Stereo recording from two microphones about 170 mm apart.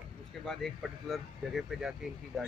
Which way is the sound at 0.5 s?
Centre (ahead or behind).